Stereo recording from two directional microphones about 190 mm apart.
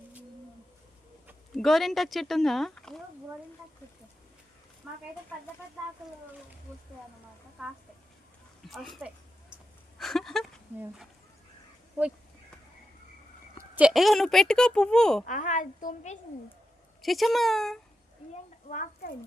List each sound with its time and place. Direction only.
1.5 s speech: centre (ahead or behind)
4.8 s speech: centre (ahead or behind)
8.6 s a sound: centre (ahead or behind)
10.8 s speech: centre (ahead or behind)
13.7 s speech: 5° right (ahead or behind)
15.3 s a woman's voice: 40° left (ahead or behind)
17.0 s speech: centre (ahead or behind)
18.7 s a child's voice: 45° left (ahead or behind)